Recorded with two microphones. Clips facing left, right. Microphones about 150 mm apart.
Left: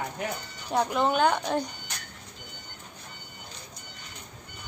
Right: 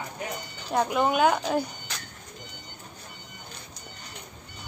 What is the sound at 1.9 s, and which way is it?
Music, 90° right.